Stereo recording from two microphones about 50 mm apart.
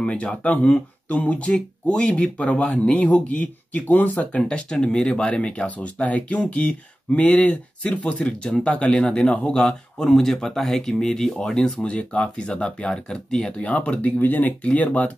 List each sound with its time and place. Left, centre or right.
0.0 s speech: centre
4.4 s speech: centre